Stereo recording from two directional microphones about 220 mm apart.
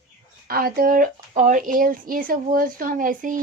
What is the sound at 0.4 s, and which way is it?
Speech, 40° right (ahead or behind).